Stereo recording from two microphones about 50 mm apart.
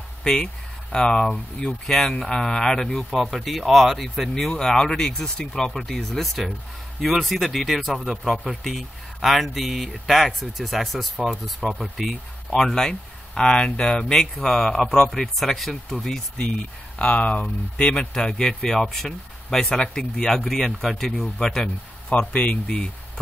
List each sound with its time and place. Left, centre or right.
0.2 s speech: centre
7.9 s speech: centre
8.3 s speech: centre
12.6 s speech: centre
17.0 s speech: left
17.7 s speech: centre
22.3 s speech: left